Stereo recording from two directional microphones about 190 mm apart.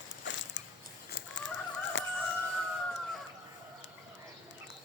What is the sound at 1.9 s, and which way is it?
Fowl, 75° left (ahead or behind).